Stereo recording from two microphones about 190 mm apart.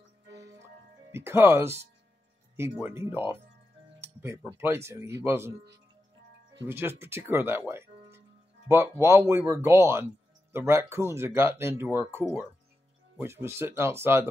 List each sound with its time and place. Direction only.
0.3 s music: 65° right (ahead or behind)
1.1 s speech: 15° right (ahead or behind)
4.0 s music: 15° right (ahead or behind)
4.6 s speech: 15° right (ahead or behind)
6.6 s speech: 10° right (ahead or behind)